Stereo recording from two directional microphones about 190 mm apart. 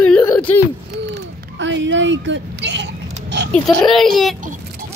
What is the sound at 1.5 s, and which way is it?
A woman's voice, 75° right (ahead or behind).